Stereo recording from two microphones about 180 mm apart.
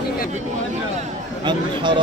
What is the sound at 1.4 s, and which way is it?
Speech, 25° right (ahead or behind).